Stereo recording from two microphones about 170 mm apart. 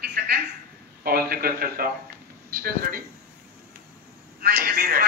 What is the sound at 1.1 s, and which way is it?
Speech, 60° right (ahead or behind).